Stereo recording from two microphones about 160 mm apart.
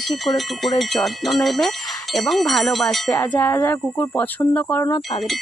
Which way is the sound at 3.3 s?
15° left (ahead or behind).